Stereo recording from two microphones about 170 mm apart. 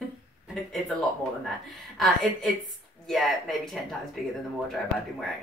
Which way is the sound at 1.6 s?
Centre (ahead or behind).